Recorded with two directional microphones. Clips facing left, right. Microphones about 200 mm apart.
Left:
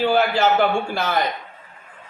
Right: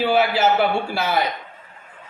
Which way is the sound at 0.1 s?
5° right (ahead or behind).